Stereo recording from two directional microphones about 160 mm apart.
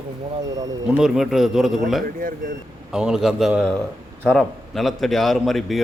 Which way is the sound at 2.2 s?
60° right (ahead or behind).